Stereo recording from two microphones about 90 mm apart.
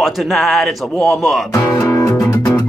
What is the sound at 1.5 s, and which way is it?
Music, 35° left (ahead or behind).